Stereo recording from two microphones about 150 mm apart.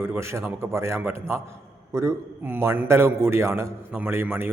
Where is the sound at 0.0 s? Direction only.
15° right (ahead or behind).